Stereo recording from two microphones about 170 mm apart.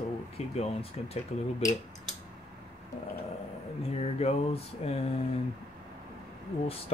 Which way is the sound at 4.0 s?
35° left (ahead or behind).